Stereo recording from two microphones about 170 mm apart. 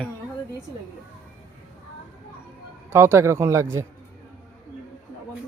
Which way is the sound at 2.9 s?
15° right (ahead or behind).